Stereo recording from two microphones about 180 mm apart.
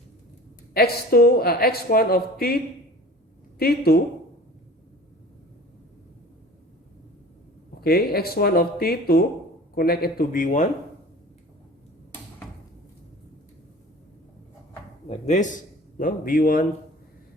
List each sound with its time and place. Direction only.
0.7 s speech: 60° left (ahead or behind)
3.6 s speech: 60° left (ahead or behind)
7.8 s speech: 60° left (ahead or behind)
15.1 s a man's voice: 40° left (ahead or behind)